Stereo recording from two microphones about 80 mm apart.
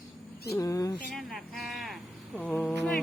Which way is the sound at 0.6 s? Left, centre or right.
Left.